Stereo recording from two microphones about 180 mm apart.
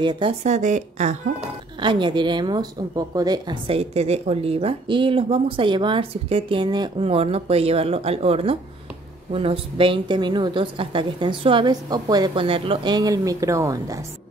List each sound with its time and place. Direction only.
0.0 s a woman's voice: 25° right (ahead or behind)
0.4 s a woman's voice: 40° right (ahead or behind)
1.8 s a woman's voice: 25° right (ahead or behind)